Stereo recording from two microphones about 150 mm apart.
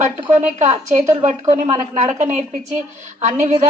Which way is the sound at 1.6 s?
20° right (ahead or behind).